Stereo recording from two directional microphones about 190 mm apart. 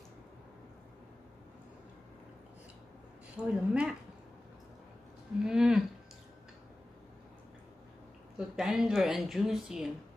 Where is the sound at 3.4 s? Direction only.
5° right (ahead or behind).